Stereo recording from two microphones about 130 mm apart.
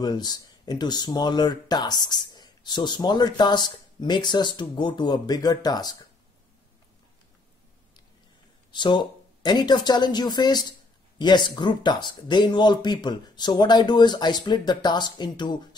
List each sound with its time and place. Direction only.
0.0 s speech: 30° left (ahead or behind)
8.7 s speech: 35° left (ahead or behind)